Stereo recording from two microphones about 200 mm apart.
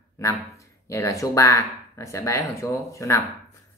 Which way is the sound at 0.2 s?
15° left (ahead or behind).